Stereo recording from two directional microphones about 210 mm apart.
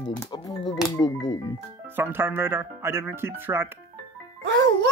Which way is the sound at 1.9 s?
10° right (ahead or behind).